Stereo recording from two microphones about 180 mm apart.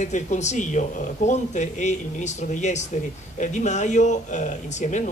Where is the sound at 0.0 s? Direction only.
40° left (ahead or behind).